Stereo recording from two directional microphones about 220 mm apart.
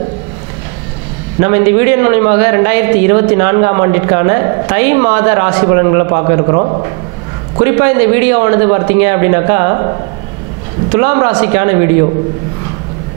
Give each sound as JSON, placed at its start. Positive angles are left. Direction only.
{"t": 1.4, "sound": "a man's voice", "side_deg": -20}
{"t": 10.9, "sound": "a man's voice", "side_deg": -20}